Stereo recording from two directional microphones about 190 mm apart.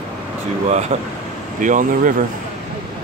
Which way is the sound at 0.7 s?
35° right (ahead or behind).